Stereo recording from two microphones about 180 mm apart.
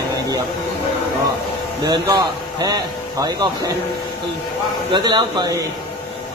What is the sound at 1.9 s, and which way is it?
A man's voice, 20° right (ahead or behind).